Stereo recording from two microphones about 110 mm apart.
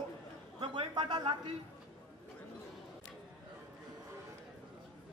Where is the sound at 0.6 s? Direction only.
50° right (ahead or behind).